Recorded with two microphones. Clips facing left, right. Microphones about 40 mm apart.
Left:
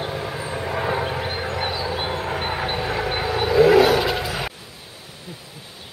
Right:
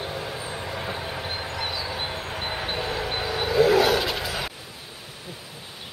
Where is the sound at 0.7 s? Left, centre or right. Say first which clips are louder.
Left 11 dB; left.